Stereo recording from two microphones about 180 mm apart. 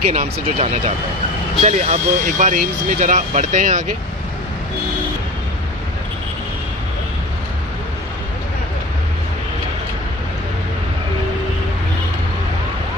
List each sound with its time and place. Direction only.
0.1 s speech: 35° right (ahead or behind)